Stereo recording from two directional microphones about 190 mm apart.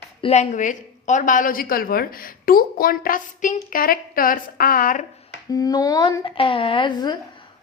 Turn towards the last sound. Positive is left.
turn(degrees=25)  # may be behind; listen again after turning